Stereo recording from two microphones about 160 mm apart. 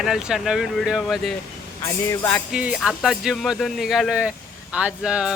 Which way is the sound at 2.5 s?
10° right (ahead or behind).